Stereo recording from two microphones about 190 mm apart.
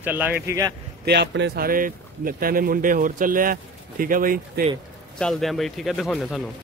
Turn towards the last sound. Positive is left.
turn(degrees=0)  # may be behind; listen again after turning